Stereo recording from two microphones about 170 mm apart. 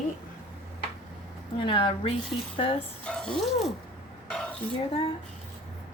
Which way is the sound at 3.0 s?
5° left (ahead or behind).